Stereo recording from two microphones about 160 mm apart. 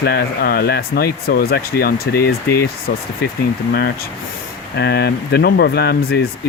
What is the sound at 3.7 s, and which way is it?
Speech, 80° left.